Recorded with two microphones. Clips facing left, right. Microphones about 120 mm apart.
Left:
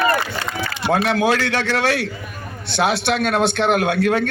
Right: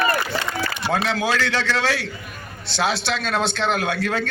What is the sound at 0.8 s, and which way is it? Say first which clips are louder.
A man's voice: left 5 dB; 55° left (ahead or behind).